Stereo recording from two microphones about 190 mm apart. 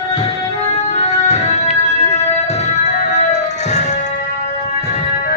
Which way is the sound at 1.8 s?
35° left (ahead or behind).